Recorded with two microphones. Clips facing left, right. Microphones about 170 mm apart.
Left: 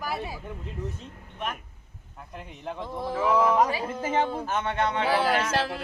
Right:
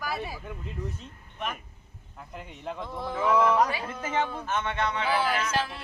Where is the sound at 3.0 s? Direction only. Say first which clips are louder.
Left 1 dB; 5° left (ahead or behind).